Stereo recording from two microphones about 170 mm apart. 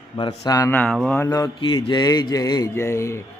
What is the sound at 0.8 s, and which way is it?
Speech, 5° left (ahead or behind).